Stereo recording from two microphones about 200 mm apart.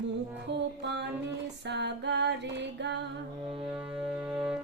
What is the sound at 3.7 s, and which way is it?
Music, 5° right (ahead or behind).